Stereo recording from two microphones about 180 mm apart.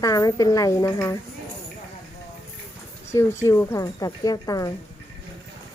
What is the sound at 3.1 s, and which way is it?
Speech, 15° left (ahead or behind).